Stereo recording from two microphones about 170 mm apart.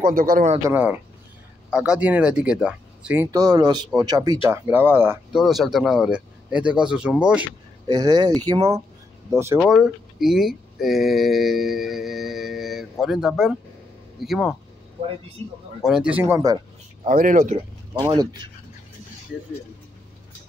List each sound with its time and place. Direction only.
0.0 s speech: 55° right (ahead or behind)
0.7 s speech: 10° right (ahead or behind)
3.3 s speech: 25° right (ahead or behind)
5.4 s speech: centre (ahead or behind)
7.8 s speech: 25° right (ahead or behind)
9.6 s speech: centre (ahead or behind)
15.8 s speech: 5° right (ahead or behind)
17.0 s speech: 50° right (ahead or behind)
17.9 s speech: 25° right (ahead or behind)